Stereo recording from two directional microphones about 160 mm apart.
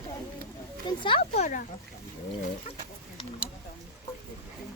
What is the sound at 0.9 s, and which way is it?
Speech, 30° left (ahead or behind).